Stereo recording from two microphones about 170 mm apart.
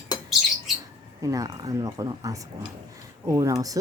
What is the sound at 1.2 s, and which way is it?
Speech, 20° right (ahead or behind).